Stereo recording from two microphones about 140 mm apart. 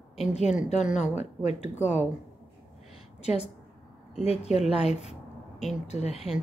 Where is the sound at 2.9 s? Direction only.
50° left (ahead or behind).